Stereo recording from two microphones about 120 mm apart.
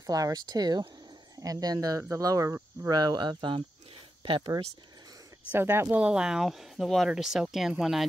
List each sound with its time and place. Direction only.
0.0 s speech: 30° right (ahead or behind)
3.0 s speech: 35° right (ahead or behind)
5.5 s speech: 20° right (ahead or behind); by 8.0 s 5° right (ahead or behind)